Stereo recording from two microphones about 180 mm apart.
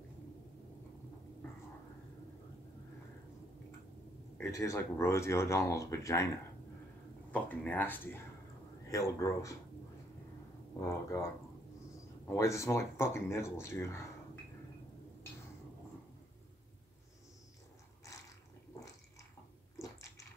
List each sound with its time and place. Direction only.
4.4 s speech: 15° left (ahead or behind)
7.3 s speech: 10° left (ahead or behind)
10.8 s speech: 15° left (ahead or behind)
12.3 s speech: 15° left (ahead or behind)
18.1 s a sound: 20° left (ahead or behind)
19.8 s a sound: 20° left (ahead or behind)